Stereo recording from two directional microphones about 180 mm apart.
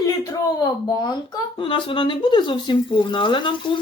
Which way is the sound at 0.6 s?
20° left (ahead or behind).